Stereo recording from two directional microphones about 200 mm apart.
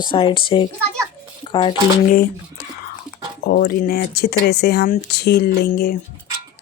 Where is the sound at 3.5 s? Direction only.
45° left (ahead or behind).